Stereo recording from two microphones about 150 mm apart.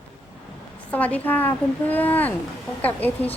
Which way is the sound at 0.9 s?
10° left (ahead or behind).